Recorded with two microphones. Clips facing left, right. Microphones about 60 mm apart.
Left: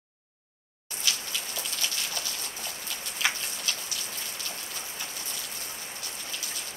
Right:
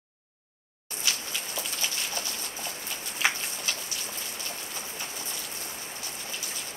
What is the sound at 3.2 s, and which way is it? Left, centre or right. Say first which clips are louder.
Tick-tock: right 2 dB; right.